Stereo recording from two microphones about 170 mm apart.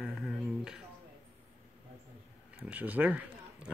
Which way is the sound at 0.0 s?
Centre (ahead or behind).